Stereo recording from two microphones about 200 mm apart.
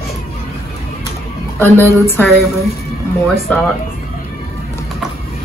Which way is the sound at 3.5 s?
5° left (ahead or behind).